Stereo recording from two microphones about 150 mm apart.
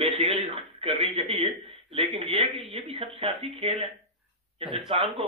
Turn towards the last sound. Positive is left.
turn(degrees=-40)  # may be behind; listen again after turning